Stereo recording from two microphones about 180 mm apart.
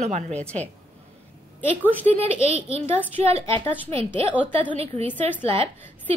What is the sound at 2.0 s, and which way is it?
Speech, 40° right (ahead or behind).